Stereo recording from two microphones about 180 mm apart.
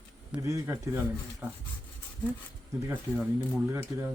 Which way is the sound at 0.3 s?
5° right (ahead or behind).